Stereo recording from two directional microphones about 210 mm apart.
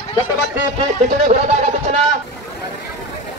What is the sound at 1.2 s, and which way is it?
Speech, 35° right (ahead or behind).